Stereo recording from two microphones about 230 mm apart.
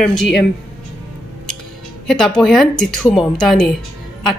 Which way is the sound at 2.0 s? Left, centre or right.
Centre.